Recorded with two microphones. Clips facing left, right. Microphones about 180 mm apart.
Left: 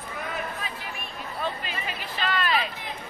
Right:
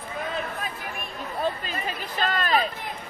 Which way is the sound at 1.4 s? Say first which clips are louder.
Right 4 dB; 40° right (ahead or behind).